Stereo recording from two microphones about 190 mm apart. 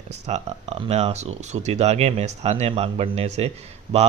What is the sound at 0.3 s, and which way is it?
Speech, 35° right (ahead or behind).